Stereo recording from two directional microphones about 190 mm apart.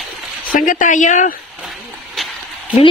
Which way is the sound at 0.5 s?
45° left (ahead or behind).